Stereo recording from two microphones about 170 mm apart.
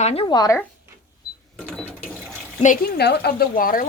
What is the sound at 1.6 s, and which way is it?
Sewing machine, 5° left (ahead or behind).